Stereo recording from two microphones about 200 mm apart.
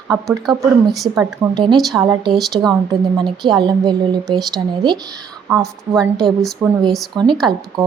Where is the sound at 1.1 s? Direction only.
15° right (ahead or behind).